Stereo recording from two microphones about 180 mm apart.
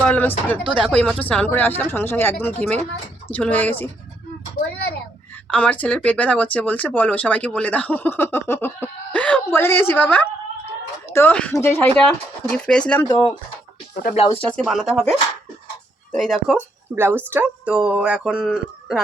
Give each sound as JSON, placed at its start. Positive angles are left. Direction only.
{"t": 0.0, "sound": "speech", "side_deg": 10}
{"t": 4.6, "sound": "a sound", "side_deg": 50}
{"t": 5.5, "sound": "a woman's voice", "side_deg": 10}
{"t": 13.9, "sound": "speech", "side_deg": 50}
{"t": 14.5, "sound": "speech", "side_deg": 0}
{"t": 16.1, "sound": "speech", "side_deg": 0}
{"t": 16.6, "sound": "speech", "side_deg": -10}